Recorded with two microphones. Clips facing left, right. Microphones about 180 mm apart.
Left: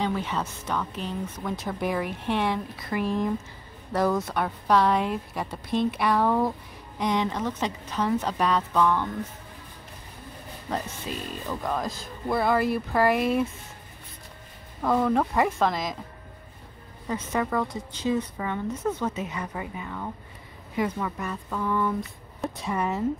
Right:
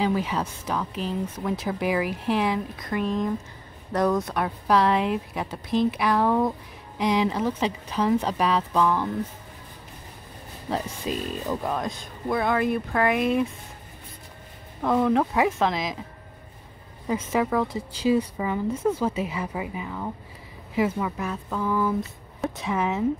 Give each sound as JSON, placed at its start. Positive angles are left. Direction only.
{"t": 0.0, "sound": "a woman's voice", "side_deg": -10}
{"t": 11.1, "sound": "speech", "side_deg": -20}
{"t": 11.6, "sound": "speech", "side_deg": 0}
{"t": 14.8, "sound": "speech", "side_deg": 0}
{"t": 17.1, "sound": "a woman's voice", "side_deg": -5}